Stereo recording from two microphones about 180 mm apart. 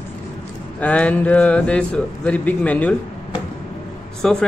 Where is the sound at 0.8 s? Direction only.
10° left (ahead or behind).